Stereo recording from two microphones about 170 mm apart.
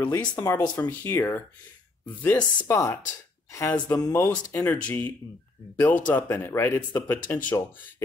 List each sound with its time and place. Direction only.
0.4 s speech: 15° left (ahead or behind)